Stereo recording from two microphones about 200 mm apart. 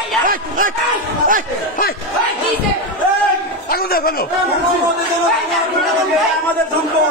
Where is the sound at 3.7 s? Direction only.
50° left (ahead or behind).